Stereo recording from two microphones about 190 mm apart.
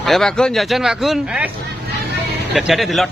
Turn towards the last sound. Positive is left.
turn(degrees=0)  # may be behind; listen again after turning